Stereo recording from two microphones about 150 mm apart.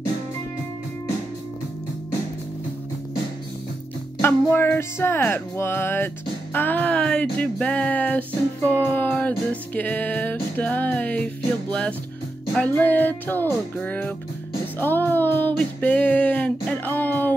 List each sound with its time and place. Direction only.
4.2 s music: 15° left (ahead or behind)
12.5 s music: 10° left (ahead or behind)